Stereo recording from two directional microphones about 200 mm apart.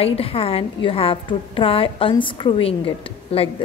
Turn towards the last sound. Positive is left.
turn(degrees=25)  # may be behind; listen again after turning